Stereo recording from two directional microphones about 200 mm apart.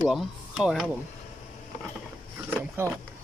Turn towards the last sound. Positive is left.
turn(degrees=-15)  # may be behind; listen again after turning